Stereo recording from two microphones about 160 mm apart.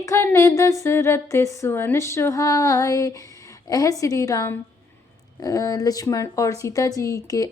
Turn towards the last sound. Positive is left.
turn(degrees=20)  # may be behind; listen again after turning